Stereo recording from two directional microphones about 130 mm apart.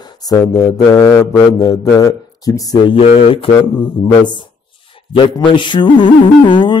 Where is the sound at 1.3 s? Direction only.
25° left (ahead or behind).